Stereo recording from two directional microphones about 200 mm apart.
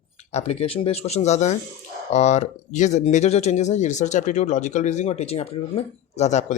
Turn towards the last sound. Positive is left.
turn(degrees=35)  # may be behind; listen again after turning